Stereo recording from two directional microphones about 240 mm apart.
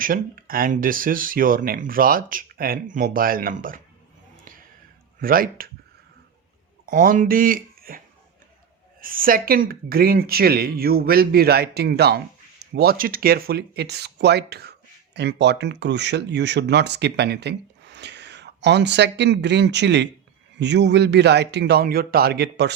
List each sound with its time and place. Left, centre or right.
0.0 s speech: right
5.2 s speech: right
6.9 s speech: right